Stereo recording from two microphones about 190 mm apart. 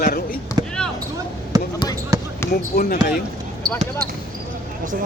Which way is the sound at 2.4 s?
15° left (ahead or behind).